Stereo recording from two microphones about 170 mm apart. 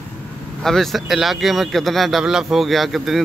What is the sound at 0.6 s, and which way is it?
Speech, centre (ahead or behind).